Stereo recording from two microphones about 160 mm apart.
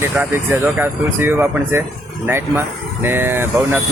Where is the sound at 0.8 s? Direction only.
15° right (ahead or behind).